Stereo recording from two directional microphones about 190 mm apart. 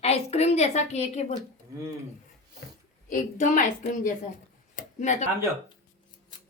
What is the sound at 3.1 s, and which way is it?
Speech, 40° left (ahead or behind).